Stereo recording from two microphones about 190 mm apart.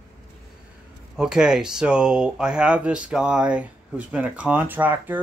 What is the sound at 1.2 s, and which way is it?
Speech, 5° right (ahead or behind).